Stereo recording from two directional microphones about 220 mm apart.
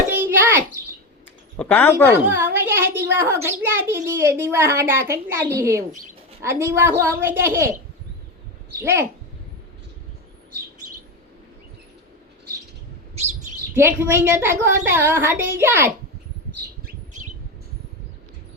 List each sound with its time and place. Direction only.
0.2 s a sound: 10° right (ahead or behind)
1.5 s speech: 10° left (ahead or behind)
2.4 s a child's voice: 10° right (ahead or behind)
8.8 s a child's voice: 10° right (ahead or behind)
13.7 s a child's voice: 10° right (ahead or behind)
16.8 s bird: 35° right (ahead or behind)